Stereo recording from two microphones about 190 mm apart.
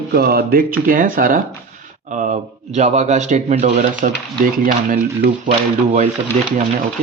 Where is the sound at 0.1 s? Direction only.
55° right (ahead or behind); by 6.1 s 40° right (ahead or behind).